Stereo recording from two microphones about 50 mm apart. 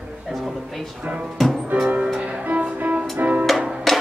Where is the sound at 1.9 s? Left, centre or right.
Right.